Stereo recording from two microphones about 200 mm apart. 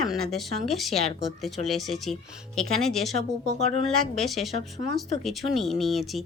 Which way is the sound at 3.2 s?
35° left (ahead or behind).